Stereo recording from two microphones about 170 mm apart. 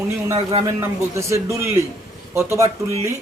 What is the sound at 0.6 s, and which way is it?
A man's voice, 15° right (ahead or behind).